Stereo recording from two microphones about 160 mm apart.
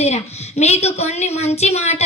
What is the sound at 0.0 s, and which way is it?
A woman's voice, 45° left (ahead or behind).